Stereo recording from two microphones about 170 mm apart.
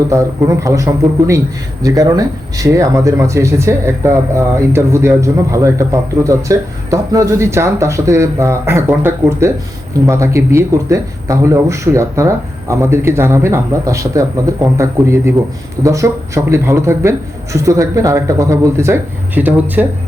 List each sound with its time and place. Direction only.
0.1 s a man's voice: 20° right (ahead or behind)